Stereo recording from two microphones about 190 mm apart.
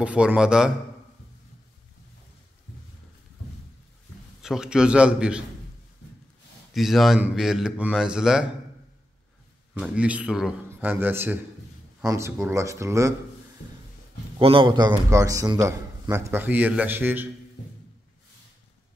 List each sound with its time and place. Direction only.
0.0 s speech: 5° right (ahead or behind)
4.4 s speech: 5° right (ahead or behind)
6.7 s speech: centre (ahead or behind)
9.8 s a man's voice: 5° right (ahead or behind)
14.4 s a man's voice: 25° right (ahead or behind); by 17.3 s 10° right (ahead or behind)